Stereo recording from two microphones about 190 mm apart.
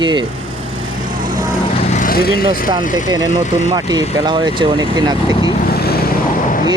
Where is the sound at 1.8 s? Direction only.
40° left (ahead or behind).